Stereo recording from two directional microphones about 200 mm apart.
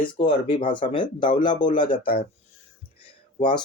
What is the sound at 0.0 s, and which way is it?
Speech, 25° left (ahead or behind).